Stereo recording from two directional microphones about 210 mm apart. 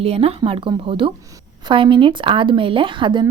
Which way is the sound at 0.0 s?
30° right (ahead or behind).